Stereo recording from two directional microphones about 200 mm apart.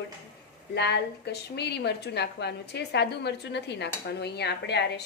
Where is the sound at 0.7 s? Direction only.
55° left (ahead or behind).